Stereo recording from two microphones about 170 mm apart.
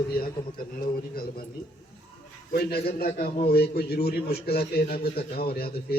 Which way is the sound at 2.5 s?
65° left (ahead or behind).